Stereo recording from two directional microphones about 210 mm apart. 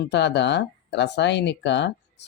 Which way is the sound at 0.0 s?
55° left (ahead or behind).